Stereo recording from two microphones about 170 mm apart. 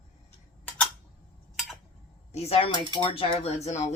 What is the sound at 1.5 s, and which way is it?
Tick-tock, centre (ahead or behind).